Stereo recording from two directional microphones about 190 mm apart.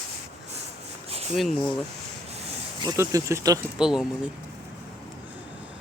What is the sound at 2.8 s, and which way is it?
Speech, 15° right (ahead or behind).